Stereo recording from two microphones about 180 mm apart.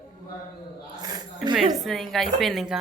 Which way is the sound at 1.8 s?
Centre (ahead or behind).